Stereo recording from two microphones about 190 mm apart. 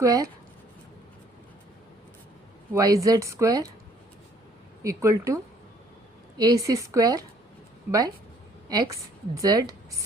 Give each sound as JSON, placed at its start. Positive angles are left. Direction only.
{"t": 0.0, "sound": "speech", "side_deg": -15}
{"t": 2.7, "sound": "speech", "side_deg": -20}
{"t": 4.8, "sound": "a woman's voice", "side_deg": -15}